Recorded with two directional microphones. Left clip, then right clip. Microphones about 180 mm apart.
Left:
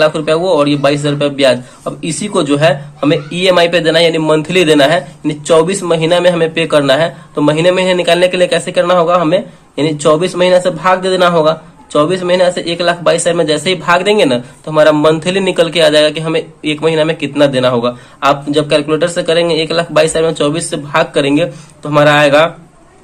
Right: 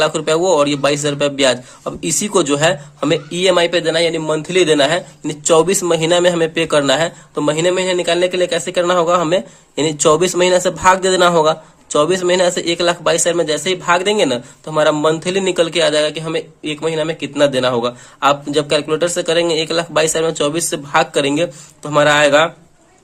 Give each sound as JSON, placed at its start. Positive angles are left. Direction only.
{"t": 0.0, "sound": "a man's voice", "side_deg": -45}